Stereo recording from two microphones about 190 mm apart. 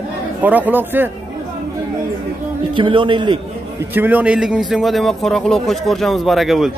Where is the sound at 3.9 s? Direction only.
10° right (ahead or behind).